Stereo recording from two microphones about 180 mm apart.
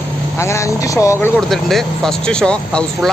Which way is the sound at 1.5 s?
Centre (ahead or behind).